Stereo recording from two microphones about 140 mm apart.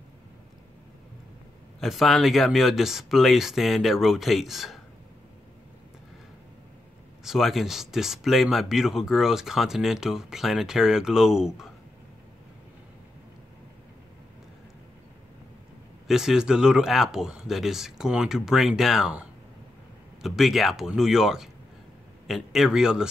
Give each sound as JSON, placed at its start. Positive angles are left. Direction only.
{"t": 1.8, "sound": "speech", "side_deg": 0}
{"t": 7.2, "sound": "speech", "side_deg": 0}
{"t": 16.1, "sound": "speech", "side_deg": -5}